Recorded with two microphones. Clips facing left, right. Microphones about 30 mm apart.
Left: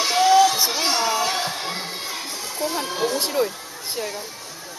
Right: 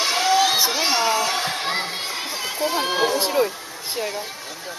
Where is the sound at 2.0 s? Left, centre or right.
Right.